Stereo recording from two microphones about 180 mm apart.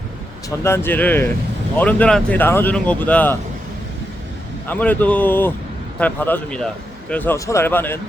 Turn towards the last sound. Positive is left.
turn(degrees=10)  # may be behind; listen again after turning